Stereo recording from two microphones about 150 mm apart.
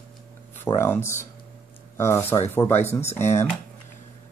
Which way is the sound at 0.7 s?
15° left (ahead or behind).